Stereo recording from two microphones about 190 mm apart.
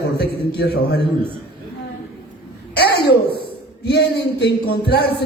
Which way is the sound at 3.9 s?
60° left (ahead or behind).